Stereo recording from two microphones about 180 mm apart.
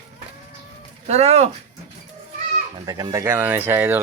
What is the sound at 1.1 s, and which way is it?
Speech, 35° right (ahead or behind).